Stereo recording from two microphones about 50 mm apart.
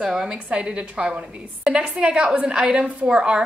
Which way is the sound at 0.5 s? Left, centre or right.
Right.